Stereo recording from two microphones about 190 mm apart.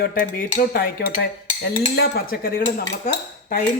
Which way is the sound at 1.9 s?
55° left (ahead or behind).